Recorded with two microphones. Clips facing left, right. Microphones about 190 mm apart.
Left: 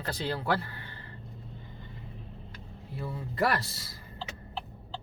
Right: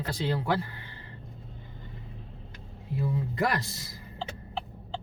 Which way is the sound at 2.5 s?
15° right (ahead or behind).